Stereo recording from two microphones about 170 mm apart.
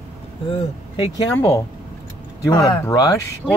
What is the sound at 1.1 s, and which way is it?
Speech, 15° left (ahead or behind).